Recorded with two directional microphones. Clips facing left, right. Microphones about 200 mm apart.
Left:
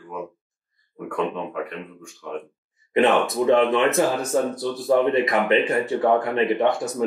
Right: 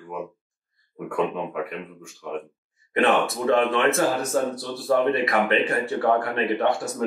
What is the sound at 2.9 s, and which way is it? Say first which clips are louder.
Speech: left 3 dB; 20° left (ahead or behind).